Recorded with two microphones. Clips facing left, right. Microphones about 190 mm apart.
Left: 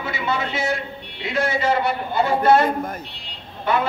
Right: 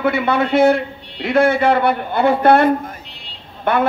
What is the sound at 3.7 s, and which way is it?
Speech, 55° right (ahead or behind).